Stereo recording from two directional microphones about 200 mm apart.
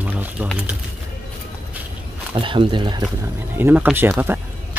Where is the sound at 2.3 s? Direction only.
25° right (ahead or behind).